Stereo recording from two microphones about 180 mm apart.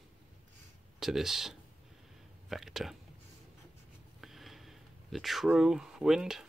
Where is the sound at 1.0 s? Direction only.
Centre (ahead or behind).